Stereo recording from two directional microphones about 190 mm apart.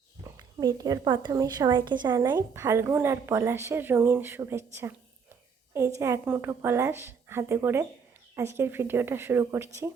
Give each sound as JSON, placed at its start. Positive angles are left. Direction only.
{"t": 0.3, "sound": "a woman's voice", "side_deg": -20}